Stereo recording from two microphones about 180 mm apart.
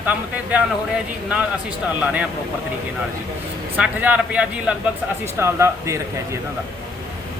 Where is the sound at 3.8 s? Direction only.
10° right (ahead or behind).